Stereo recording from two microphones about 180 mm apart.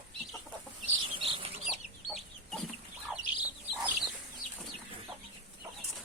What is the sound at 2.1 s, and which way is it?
Chicken, centre (ahead or behind).